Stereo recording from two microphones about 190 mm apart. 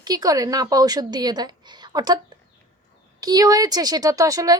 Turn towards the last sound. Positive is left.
turn(degrees=-20)  # may be behind; listen again after turning